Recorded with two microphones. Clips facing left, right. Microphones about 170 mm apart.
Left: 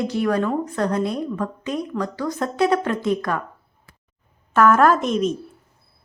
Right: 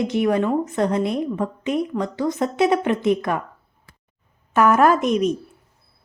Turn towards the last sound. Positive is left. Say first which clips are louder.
# right 1 dB
turn(degrees=-15)  # may be behind; listen again after turning